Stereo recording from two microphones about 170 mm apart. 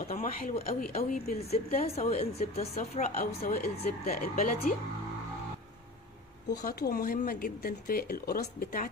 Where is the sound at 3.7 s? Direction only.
60° left (ahead or behind).